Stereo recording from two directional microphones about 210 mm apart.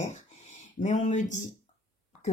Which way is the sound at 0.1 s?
35° left (ahead or behind).